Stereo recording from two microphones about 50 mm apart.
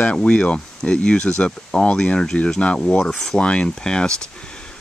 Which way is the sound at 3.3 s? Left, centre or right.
Left.